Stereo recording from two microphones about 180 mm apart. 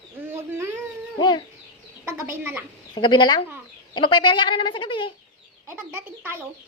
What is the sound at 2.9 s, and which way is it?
Speech, 25° left (ahead or behind).